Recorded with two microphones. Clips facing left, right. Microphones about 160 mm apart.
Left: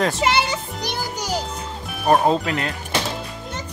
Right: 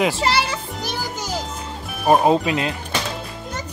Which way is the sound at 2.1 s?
15° right (ahead or behind).